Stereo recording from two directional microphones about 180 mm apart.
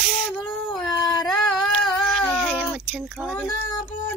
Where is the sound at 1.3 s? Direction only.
Centre (ahead or behind).